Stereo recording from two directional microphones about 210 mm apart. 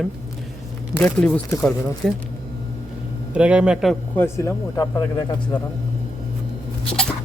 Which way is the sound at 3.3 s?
5° right (ahead or behind).